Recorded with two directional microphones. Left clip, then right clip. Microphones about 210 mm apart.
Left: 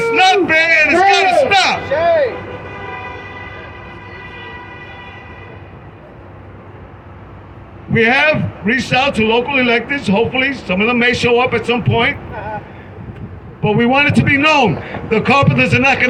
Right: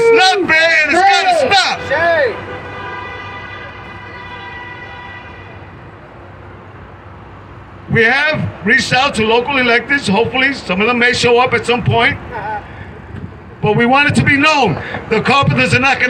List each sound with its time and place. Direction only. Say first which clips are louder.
0.0 s a sound: right 2 dB; 20° right (ahead or behind)
1.9 s music: right 2 dB; 35° right (ahead or behind)
7.9 s a man's voice: even; 20° right (ahead or behind)
13.6 s a man's voice: right 2 dB; 25° right (ahead or behind)